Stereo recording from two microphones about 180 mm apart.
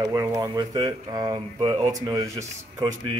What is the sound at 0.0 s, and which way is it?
A man's voice, 20° right (ahead or behind).